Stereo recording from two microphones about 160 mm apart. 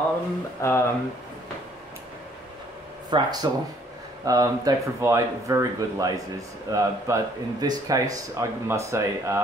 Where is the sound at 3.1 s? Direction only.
25° right (ahead or behind).